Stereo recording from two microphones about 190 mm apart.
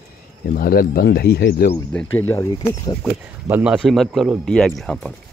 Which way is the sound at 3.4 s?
10° right (ahead or behind).